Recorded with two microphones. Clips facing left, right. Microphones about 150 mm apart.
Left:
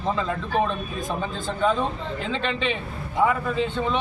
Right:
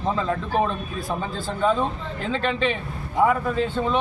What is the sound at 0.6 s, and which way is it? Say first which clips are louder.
A man's voice: even; 5° right (ahead or behind).